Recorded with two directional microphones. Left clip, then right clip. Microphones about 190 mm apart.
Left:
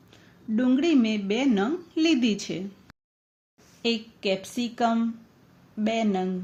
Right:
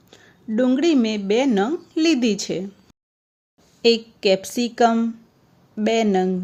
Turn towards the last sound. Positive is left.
turn(degrees=-50)  # may be behind; listen again after turning